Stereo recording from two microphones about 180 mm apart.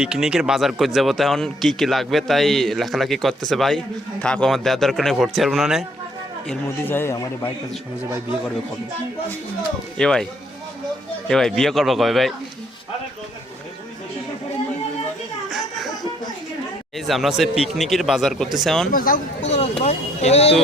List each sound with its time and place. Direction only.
0.0 s speech: 5° right (ahead or behind)
6.5 s a man's voice: 10° left (ahead or behind)
10.0 s speech: 5° left (ahead or behind)
11.3 s speech: 5° left (ahead or behind)
15.4 s a sound: centre (ahead or behind)
17.1 s speech: centre (ahead or behind)
18.9 s speech: 50° left (ahead or behind)